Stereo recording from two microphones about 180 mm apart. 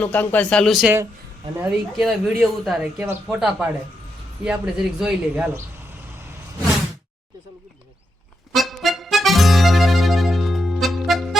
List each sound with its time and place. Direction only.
0.0 s speech: 10° left (ahead or behind)
8.5 s music: centre (ahead or behind)